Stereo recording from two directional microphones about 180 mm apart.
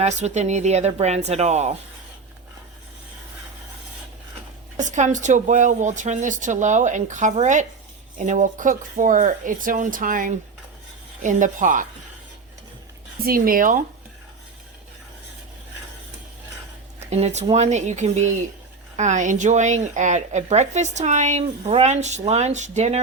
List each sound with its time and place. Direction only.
0.0 s a woman's voice: 40° right (ahead or behind)
4.8 s speech: 40° right (ahead or behind)
13.2 s speech: 50° right (ahead or behind)
17.0 s a woman's voice: 35° right (ahead or behind)